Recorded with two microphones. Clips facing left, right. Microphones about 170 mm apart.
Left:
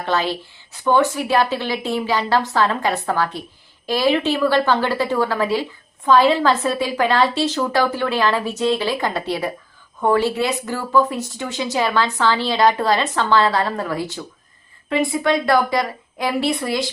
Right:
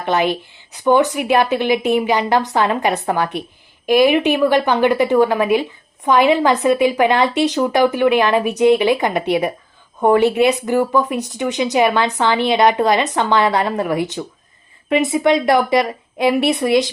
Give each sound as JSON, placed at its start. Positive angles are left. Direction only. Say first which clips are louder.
{"t": 0.0, "sound": "a woman's voice", "louder": "right 4 dB", "side_deg": -20}